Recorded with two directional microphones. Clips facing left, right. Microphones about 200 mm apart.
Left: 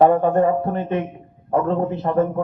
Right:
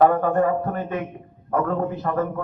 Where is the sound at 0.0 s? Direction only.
25° left (ahead or behind).